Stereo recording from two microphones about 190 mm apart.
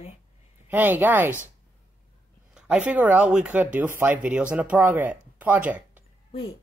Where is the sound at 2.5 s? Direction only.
5° right (ahead or behind).